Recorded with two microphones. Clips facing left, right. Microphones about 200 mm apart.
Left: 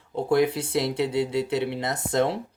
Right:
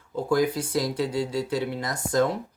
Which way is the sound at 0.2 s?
25° left (ahead or behind).